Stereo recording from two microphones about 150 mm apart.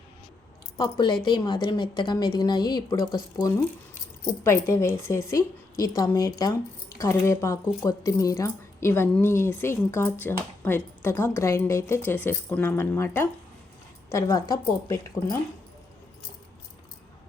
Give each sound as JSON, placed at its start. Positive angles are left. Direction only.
{"t": 0.8, "sound": "a woman's voice", "side_deg": 30}
{"t": 4.4, "sound": "a woman's voice", "side_deg": 15}